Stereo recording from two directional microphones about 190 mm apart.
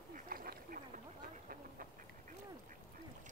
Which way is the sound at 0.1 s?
50° right (ahead or behind).